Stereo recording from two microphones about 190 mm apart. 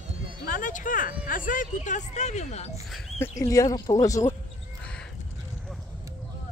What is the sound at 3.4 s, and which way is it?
Speech, 15° left (ahead or behind).